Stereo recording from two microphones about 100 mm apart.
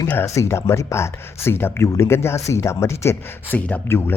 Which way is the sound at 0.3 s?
30° left (ahead or behind).